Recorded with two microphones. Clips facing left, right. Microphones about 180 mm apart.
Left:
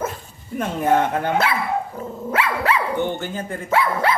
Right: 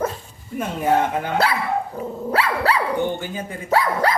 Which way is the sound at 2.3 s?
35° right (ahead or behind).